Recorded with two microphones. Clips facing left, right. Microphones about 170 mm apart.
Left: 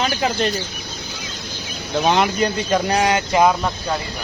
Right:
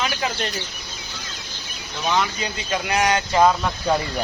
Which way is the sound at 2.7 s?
35° left (ahead or behind).